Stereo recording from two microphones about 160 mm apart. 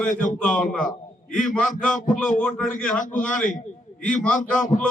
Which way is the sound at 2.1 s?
55° left (ahead or behind).